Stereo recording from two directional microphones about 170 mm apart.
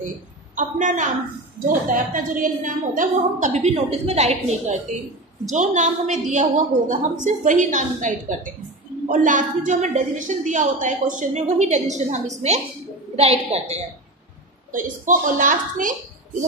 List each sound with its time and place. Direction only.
0.6 s a woman's voice: 50° right (ahead or behind)
14.7 s a woman's voice: 50° right (ahead or behind)